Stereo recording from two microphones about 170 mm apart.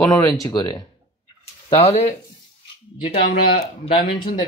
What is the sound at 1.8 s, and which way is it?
Speech, 35° left (ahead or behind).